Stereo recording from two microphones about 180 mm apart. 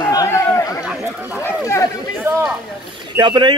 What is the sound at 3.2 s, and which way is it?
Speech, 25° right (ahead or behind).